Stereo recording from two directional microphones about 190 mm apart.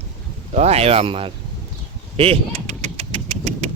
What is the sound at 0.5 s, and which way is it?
Speech, 35° right (ahead or behind).